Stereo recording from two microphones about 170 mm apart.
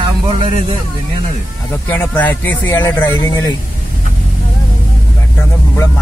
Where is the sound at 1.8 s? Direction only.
10° left (ahead or behind).